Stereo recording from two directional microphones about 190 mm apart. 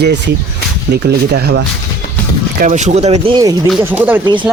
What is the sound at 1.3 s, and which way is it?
Speech, 60° right (ahead or behind).